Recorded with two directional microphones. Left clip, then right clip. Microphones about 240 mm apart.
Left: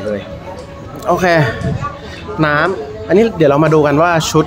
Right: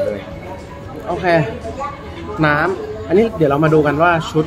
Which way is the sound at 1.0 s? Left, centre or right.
Left.